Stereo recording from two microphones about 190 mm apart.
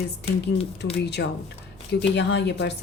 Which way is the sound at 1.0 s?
60° left (ahead or behind).